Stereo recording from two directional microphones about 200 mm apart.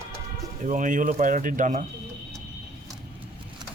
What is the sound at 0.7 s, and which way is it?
Speech, 40° right (ahead or behind).